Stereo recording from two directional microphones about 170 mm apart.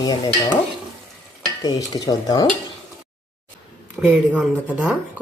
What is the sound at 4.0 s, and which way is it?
Speech, 5° right (ahead or behind).